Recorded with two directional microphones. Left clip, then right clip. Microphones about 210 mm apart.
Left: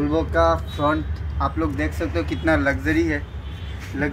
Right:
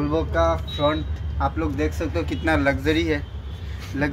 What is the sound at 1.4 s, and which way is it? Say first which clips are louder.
A man's voice: even; 30° right (ahead or behind).